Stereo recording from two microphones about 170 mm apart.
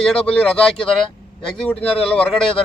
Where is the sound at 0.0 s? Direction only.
5° left (ahead or behind).